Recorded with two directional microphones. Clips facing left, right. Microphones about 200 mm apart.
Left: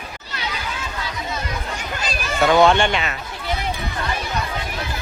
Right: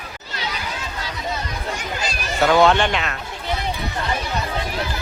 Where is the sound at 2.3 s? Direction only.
Centre (ahead or behind).